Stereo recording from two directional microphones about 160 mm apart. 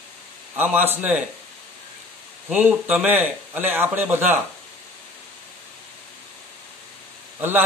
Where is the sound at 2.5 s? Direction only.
10° right (ahead or behind).